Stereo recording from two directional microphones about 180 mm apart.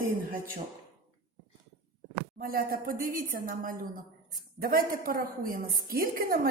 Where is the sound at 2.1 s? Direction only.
55° right (ahead or behind).